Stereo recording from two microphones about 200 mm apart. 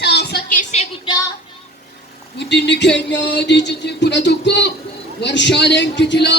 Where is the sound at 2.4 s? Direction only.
60° left (ahead or behind).